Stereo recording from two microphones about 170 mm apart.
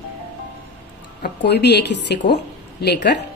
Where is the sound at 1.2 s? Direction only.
75° left (ahead or behind).